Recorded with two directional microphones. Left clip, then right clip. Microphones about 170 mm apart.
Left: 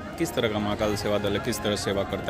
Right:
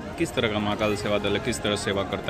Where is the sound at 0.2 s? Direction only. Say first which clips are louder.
Right 1 dB; 15° left (ahead or behind).